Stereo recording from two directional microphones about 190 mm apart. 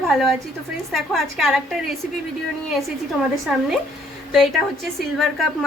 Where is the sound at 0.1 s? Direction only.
Centre (ahead or behind).